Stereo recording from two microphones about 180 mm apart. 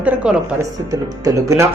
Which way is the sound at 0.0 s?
5° right (ahead or behind).